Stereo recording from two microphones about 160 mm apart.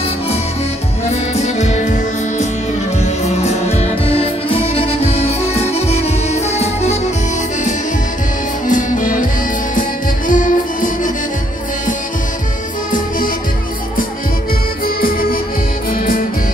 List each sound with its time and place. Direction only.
1.0 s music: 45° left (ahead or behind)
8.6 s music: 55° left (ahead or behind)
15.0 s music: 65° left (ahead or behind)